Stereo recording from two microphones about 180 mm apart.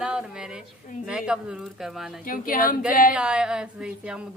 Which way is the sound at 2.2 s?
50° left (ahead or behind).